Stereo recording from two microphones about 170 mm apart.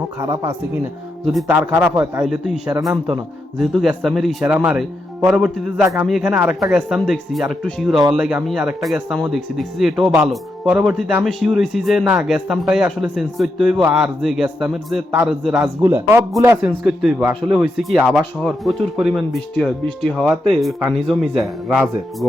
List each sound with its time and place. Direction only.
0.2 s speech: 25° right (ahead or behind)
1.2 s speech: centre (ahead or behind)
1.7 s speech: 15° right (ahead or behind)